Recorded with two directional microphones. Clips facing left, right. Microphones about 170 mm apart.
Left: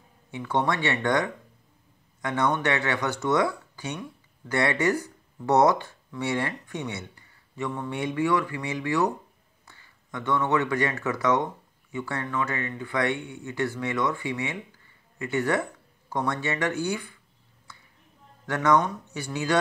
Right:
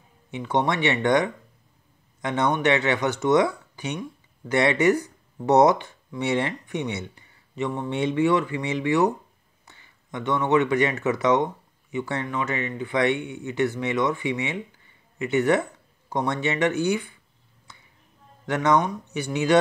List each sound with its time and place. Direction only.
0.3 s speech: 20° right (ahead or behind)
17.7 s a sound: 20° right (ahead or behind)
18.5 s speech: 20° right (ahead or behind)